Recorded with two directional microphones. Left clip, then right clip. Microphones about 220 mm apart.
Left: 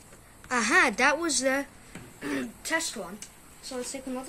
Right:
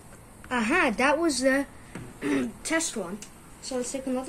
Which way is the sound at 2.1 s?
15° left (ahead or behind).